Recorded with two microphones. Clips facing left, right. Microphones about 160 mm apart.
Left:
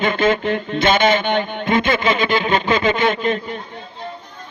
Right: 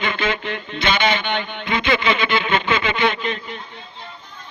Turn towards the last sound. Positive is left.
turn(degrees=45)  # may be behind; listen again after turning